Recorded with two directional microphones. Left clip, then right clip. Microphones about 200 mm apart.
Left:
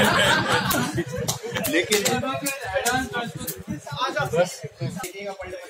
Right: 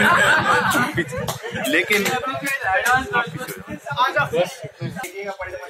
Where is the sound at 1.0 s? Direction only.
10° right (ahead or behind).